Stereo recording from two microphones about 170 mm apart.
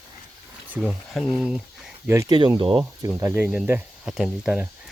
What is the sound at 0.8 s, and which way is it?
Speech, centre (ahead or behind).